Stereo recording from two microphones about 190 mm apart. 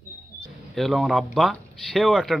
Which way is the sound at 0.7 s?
Centre (ahead or behind).